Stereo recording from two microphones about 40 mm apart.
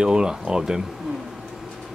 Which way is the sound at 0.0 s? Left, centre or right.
Centre.